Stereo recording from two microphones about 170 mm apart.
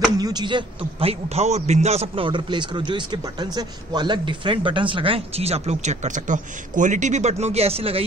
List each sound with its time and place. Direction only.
0.2 s a man's voice: 25° right (ahead or behind)